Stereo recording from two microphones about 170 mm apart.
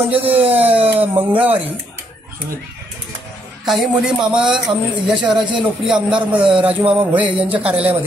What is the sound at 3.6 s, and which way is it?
Speech, centre (ahead or behind).